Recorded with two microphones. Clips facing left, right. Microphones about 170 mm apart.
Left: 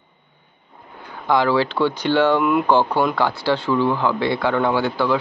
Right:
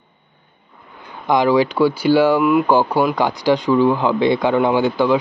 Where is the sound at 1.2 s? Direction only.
15° right (ahead or behind).